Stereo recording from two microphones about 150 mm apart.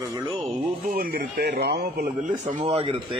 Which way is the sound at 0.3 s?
45° right (ahead or behind).